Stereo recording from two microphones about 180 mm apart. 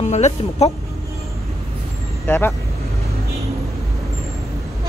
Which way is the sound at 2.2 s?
10° left (ahead or behind).